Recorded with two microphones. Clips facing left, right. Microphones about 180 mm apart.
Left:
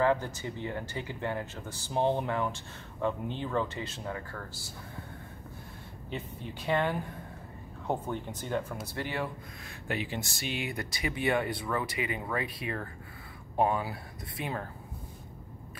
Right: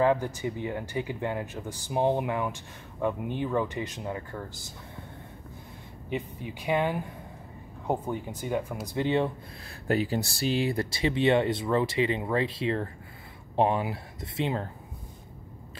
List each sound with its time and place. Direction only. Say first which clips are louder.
0.0 s speech: right 3 dB; 15° right (ahead or behind)
6.0 s speech: right 5 dB; 15° right (ahead or behind)
9.8 s speech: right 8 dB; 40° right (ahead or behind)